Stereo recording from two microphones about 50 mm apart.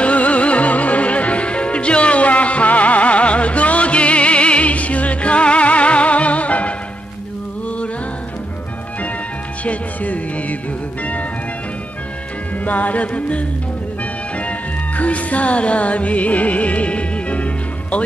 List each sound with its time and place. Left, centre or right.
0.0 s music: left
9.7 s music: left
12.6 s music: left
15.0 s music: left